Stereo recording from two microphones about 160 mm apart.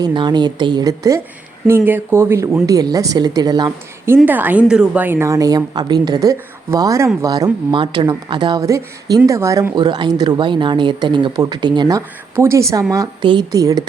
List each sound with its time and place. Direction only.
0.0 s speech: 30° right (ahead or behind)